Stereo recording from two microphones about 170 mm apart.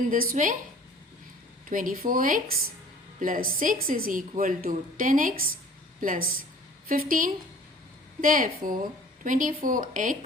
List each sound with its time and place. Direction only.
0.1 s a woman's voice: 55° right (ahead or behind)
1.7 s a woman's voice: 55° right (ahead or behind)